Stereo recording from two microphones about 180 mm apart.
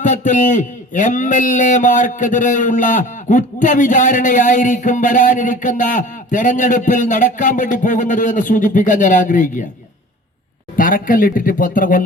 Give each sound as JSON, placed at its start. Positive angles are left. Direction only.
{"t": 0.0, "sound": "a man's voice", "side_deg": 45}
{"t": 10.8, "sound": "a man's voice", "side_deg": 50}